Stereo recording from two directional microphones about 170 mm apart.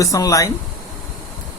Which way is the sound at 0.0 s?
20° left (ahead or behind).